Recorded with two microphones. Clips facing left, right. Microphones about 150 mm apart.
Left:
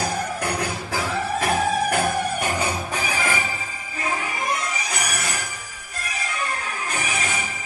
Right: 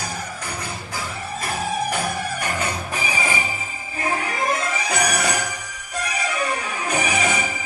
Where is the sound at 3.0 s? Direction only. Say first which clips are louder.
Right 1 dB; 10° right (ahead or behind).